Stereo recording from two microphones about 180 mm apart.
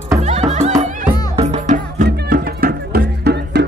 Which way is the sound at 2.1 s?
55° right (ahead or behind).